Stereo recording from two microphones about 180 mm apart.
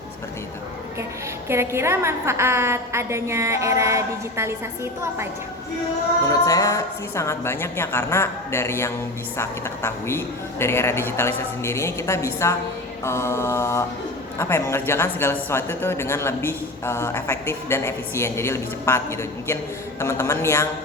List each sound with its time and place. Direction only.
1.5 s a woman's voice: 15° right (ahead or behind)
6.2 s a woman's voice: 20° left (ahead or behind)